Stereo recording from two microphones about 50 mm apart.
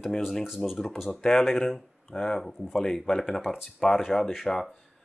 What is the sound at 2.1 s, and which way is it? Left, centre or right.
Speech, centre.